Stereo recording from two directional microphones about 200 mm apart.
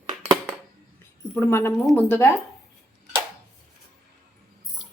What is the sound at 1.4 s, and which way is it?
Speech, 15° left (ahead or behind).